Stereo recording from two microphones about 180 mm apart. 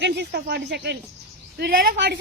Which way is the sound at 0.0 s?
65° right (ahead or behind).